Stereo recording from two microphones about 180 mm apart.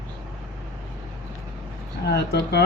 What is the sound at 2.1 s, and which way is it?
Speech, 65° left (ahead or behind).